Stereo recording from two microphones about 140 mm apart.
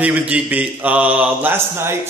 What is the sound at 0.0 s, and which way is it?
Speech, 10° right (ahead or behind).